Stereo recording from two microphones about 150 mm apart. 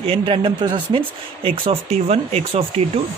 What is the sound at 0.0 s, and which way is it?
Speech, 35° right (ahead or behind).